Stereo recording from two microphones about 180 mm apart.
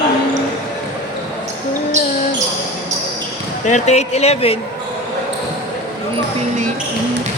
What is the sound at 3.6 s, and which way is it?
Speech, 40° left (ahead or behind).